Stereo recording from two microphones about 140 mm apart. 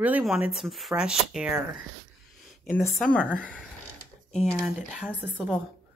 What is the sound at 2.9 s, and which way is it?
Speech, 5° left (ahead or behind).